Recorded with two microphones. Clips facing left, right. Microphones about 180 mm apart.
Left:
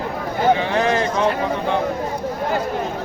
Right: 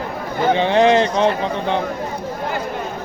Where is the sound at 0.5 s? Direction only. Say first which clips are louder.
Right 5 dB; 25° right (ahead or behind).